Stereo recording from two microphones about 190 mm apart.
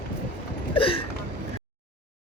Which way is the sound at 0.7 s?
30° left (ahead or behind).